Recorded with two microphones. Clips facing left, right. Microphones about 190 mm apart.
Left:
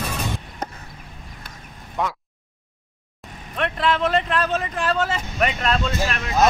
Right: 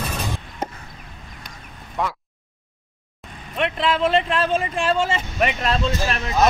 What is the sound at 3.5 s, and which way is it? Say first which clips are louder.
Vehicle: right 2 dB; 25° right (ahead or behind).